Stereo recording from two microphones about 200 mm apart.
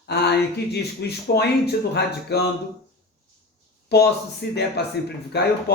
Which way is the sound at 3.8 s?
55° left (ahead or behind).